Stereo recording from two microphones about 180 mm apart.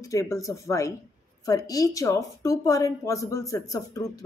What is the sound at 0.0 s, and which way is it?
A woman's voice, 15° left (ahead or behind).